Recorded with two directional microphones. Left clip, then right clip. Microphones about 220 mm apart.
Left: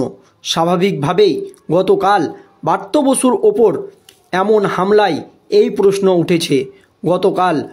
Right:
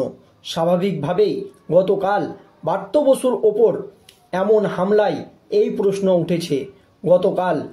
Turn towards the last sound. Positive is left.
turn(degrees=50)  # may be behind; listen again after turning